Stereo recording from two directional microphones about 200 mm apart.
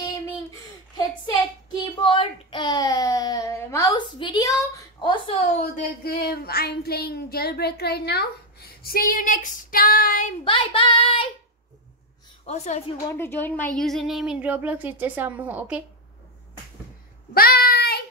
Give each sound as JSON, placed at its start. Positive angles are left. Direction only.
{"t": 1.7, "sound": "a sound", "side_deg": 25}
{"t": 5.6, "sound": "speech", "side_deg": 45}
{"t": 10.4, "sound": "child singing", "side_deg": 25}
{"t": 12.4, "sound": "a woman's voice", "side_deg": 35}
{"t": 13.1, "sound": "speech", "side_deg": 10}
{"t": 17.3, "sound": "child singing", "side_deg": 50}